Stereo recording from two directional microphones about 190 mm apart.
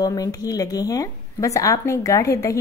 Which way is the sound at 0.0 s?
20° left (ahead or behind).